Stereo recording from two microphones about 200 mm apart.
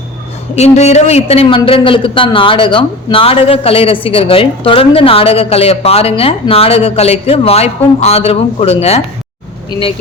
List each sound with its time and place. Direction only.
0.5 s a woman's voice: 35° left (ahead or behind)